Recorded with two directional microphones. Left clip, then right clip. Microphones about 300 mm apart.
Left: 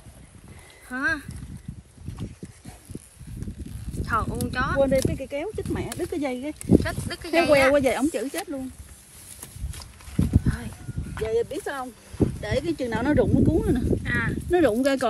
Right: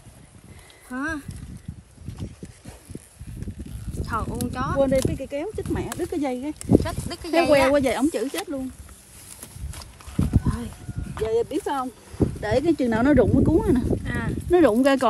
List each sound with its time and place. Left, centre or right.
0.8 s speech: centre
3.9 s speech: centre
9.8 s horse: centre
11.1 s speech: centre
12.4 s speech: right
13.8 s speech: centre
14.5 s speech: centre